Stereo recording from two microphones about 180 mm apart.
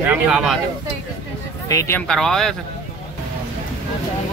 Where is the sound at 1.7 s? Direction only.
15° left (ahead or behind).